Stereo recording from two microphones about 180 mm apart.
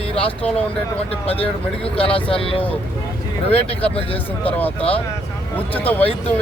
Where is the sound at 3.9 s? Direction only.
30° left (ahead or behind).